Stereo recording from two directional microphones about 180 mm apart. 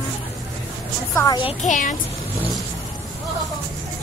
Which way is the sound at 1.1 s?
25° left (ahead or behind).